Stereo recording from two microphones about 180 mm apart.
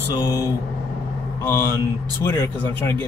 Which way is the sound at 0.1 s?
20° left (ahead or behind).